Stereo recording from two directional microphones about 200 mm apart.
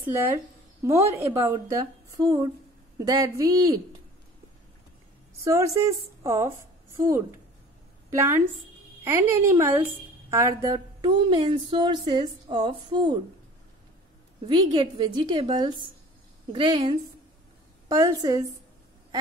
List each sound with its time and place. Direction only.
0.0 s speech: 10° right (ahead or behind)
5.4 s a woman's voice: 15° right (ahead or behind)
14.4 s a woman's voice: 20° right (ahead or behind)